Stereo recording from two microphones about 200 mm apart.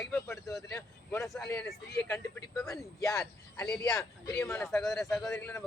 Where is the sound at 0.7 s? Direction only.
15° left (ahead or behind).